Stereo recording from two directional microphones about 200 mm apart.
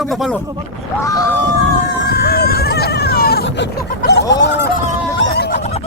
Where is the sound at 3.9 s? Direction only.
50° left (ahead or behind).